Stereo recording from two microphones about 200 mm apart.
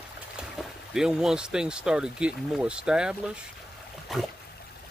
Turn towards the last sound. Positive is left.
turn(degrees=0)  # may be behind; listen again after turning